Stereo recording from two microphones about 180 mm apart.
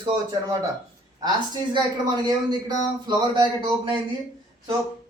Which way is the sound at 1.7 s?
25° right (ahead or behind).